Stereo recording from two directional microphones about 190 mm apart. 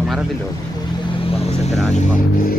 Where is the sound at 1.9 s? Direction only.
45° left (ahead or behind).